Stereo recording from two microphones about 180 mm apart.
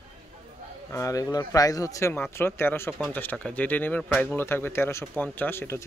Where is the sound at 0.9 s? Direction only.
20° left (ahead or behind).